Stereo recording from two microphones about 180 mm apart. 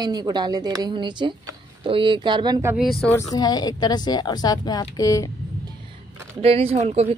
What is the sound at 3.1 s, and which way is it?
A woman's voice, 20° left (ahead or behind).